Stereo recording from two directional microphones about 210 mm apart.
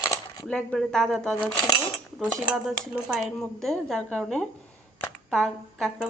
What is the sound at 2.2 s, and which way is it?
Speech, 5° right (ahead or behind).